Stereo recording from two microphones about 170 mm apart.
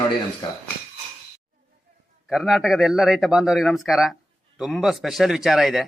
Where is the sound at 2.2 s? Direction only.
Centre (ahead or behind).